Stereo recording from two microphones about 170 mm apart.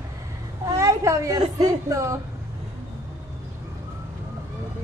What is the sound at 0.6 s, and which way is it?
Speech, 20° right (ahead or behind).